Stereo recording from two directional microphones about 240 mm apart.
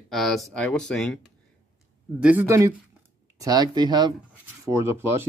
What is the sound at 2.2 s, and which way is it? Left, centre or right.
Speech, centre.